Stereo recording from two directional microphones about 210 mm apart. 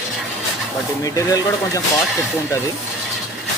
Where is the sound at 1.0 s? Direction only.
15° left (ahead or behind).